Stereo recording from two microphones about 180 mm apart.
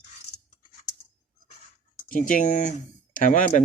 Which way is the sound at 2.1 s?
50° left (ahead or behind).